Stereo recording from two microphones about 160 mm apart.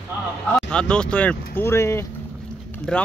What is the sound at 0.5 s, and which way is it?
Speech, 5° left (ahead or behind).